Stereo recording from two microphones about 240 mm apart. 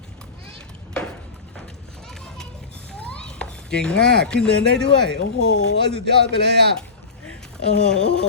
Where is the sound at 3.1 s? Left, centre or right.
Centre.